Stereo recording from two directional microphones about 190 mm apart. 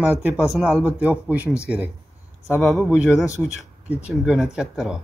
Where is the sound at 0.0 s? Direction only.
10° right (ahead or behind).